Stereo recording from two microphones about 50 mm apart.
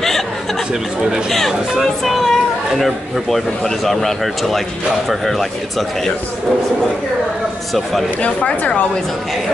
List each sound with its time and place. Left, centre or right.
1.5 s speech: centre
8.2 s speech: left